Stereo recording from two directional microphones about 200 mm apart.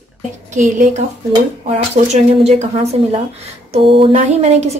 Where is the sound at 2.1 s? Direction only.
35° right (ahead or behind).